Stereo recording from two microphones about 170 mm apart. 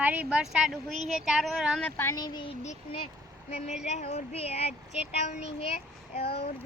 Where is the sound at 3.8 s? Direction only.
40° left (ahead or behind).